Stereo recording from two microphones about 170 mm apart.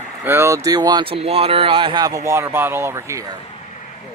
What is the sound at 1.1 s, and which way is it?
Speech, 35° right (ahead or behind).